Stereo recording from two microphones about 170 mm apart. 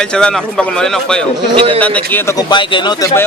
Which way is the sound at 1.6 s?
30° right (ahead or behind).